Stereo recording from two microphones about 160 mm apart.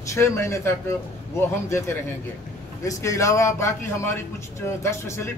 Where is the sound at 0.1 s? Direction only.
15° left (ahead or behind).